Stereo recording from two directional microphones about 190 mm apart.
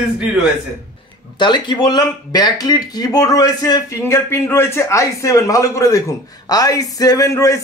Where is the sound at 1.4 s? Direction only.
25° left (ahead or behind).